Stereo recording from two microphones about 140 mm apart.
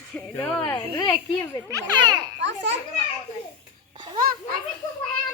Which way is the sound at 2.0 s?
30° right (ahead or behind).